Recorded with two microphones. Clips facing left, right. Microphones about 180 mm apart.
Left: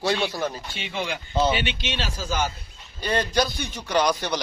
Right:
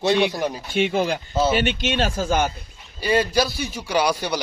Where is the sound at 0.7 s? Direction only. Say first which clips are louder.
Right 10 dB; 50° right (ahead or behind).